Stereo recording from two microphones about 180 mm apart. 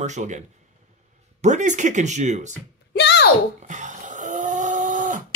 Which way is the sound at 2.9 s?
70° left (ahead or behind).